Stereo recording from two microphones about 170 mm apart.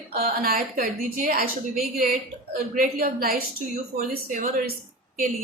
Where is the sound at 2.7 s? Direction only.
55° right (ahead or behind).